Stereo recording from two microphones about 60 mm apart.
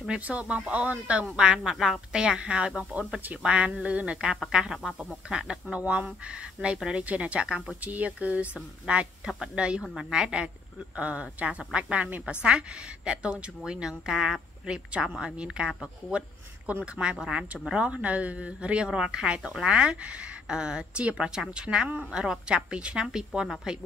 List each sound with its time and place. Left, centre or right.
0.1 s a woman's voice: right